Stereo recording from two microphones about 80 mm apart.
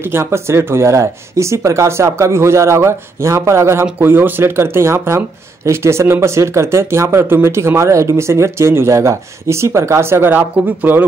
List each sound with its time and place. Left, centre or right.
0.1 s speech: right